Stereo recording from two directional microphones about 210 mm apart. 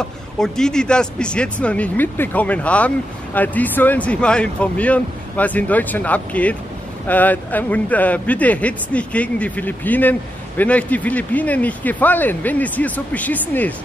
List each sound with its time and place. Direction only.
0.0 s speech: 5° left (ahead or behind)